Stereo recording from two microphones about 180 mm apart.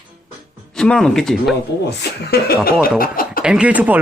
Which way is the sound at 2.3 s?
60° left (ahead or behind).